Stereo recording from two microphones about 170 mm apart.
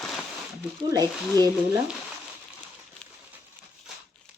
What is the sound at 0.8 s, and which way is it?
Speech, 20° right (ahead or behind).